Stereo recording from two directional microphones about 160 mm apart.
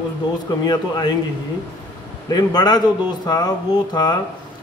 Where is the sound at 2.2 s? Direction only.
25° left (ahead or behind).